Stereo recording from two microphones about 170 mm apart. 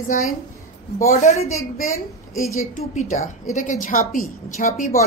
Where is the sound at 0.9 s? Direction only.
40° left (ahead or behind).